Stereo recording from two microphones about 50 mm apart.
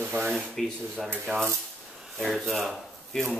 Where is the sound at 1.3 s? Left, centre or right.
Right.